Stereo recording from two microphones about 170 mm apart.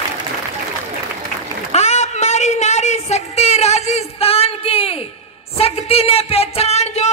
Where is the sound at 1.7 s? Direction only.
40° left (ahead or behind).